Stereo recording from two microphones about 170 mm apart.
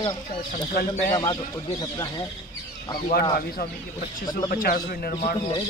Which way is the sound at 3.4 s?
65° left (ahead or behind).